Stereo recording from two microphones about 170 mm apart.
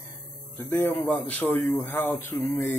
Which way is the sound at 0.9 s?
Centre (ahead or behind).